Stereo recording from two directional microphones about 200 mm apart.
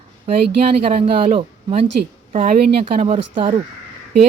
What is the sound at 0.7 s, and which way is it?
Speech, 30° right (ahead or behind).